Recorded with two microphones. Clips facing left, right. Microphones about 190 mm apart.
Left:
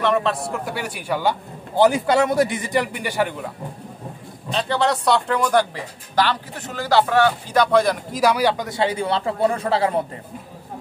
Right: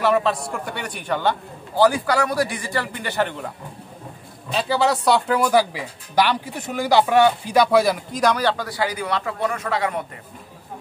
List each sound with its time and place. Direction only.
0.0 s speech: 5° right (ahead or behind)
1.8 s a man's voice: 20° left (ahead or behind); by 3.5 s 5° left (ahead or behind)
4.5 s speech: 5° right (ahead or behind); by 10.0 s 30° left (ahead or behind)